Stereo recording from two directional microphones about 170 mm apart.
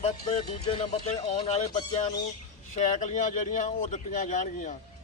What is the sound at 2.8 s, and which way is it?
Speech, 45° left (ahead or behind).